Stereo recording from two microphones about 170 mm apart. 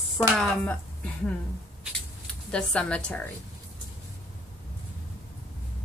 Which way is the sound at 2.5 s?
5° left (ahead or behind).